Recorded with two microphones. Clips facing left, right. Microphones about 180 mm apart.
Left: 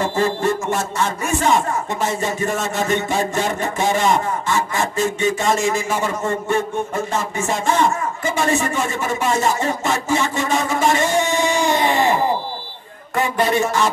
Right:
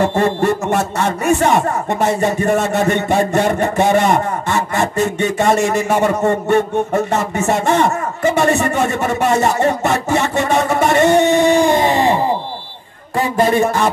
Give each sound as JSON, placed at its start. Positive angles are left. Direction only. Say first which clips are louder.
{"t": 0.0, "sound": "speech", "louder": "right 4 dB", "side_deg": -65}
{"t": 13.2, "sound": "speech", "louder": "right 4 dB", "side_deg": -45}